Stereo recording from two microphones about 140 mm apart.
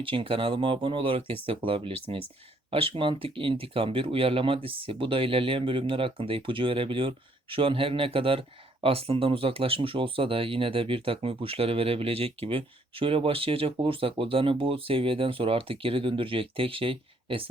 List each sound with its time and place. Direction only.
0.0 s speech: 40° right (ahead or behind)